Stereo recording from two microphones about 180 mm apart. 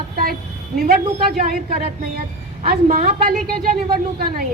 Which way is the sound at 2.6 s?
55° right (ahead or behind).